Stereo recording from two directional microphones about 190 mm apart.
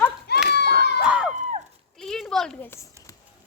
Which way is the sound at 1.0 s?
5° right (ahead or behind).